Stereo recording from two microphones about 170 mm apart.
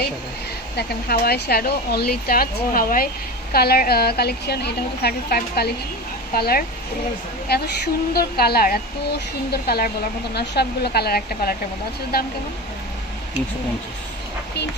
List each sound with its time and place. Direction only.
0.7 s a woman's voice: 65° left (ahead or behind)